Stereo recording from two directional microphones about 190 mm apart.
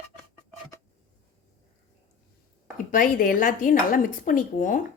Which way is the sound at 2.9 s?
45° left (ahead or behind).